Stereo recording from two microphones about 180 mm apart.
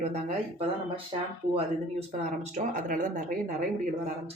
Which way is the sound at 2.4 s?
45° right (ahead or behind).